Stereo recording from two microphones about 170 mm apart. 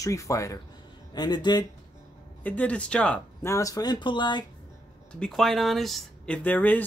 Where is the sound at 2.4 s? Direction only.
10° left (ahead or behind).